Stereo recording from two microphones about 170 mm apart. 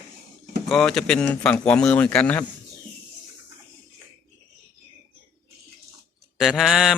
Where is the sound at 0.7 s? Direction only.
5° left (ahead or behind).